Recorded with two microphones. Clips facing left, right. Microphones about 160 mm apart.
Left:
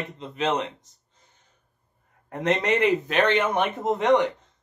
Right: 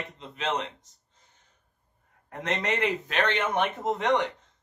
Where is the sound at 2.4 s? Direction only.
15° left (ahead or behind).